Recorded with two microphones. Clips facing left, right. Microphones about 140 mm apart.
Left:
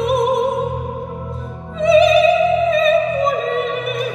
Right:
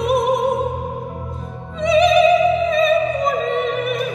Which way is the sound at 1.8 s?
Centre (ahead or behind).